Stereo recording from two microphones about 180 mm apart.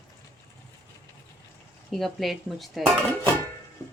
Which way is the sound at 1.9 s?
Centre (ahead or behind).